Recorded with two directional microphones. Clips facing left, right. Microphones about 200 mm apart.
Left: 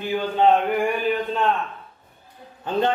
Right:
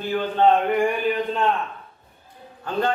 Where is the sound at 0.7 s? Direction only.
Centre (ahead or behind).